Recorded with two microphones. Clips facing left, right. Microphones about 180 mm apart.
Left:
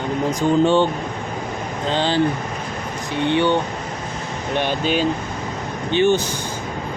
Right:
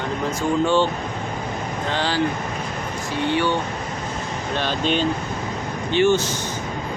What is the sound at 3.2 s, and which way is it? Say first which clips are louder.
Speech: left 4 dB; 20° left (ahead or behind).